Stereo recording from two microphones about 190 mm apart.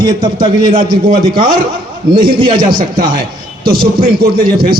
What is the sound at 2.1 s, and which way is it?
Speech, 25° right (ahead or behind).